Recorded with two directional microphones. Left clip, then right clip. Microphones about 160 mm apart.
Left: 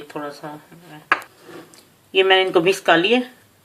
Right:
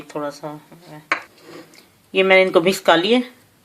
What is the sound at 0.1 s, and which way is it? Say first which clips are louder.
Speech: right 4 dB; 70° right (ahead or behind).